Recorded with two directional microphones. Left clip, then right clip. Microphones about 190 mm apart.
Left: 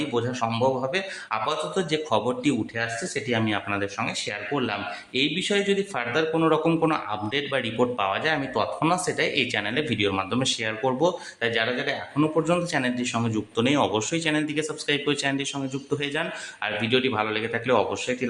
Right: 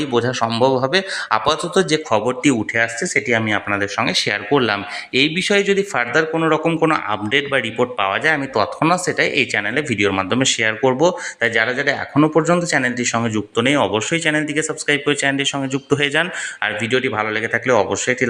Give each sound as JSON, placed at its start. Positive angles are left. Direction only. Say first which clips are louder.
{"t": 0.1, "sound": "speech", "louder": "right 8 dB", "side_deg": -35}
{"t": 6.3, "sound": "a man's voice", "louder": "right 4 dB", "side_deg": -15}
{"t": 16.6, "sound": "a man's voice", "louder": "right 4 dB", "side_deg": -20}